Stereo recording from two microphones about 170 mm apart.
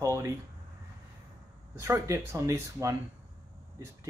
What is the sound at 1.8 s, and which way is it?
Speech, 15° right (ahead or behind).